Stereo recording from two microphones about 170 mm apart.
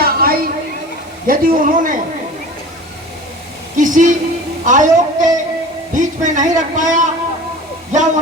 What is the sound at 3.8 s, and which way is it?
A man's voice, 50° right (ahead or behind).